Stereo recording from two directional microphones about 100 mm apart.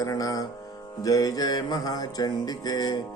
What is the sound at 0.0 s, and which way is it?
Music, 35° left (ahead or behind).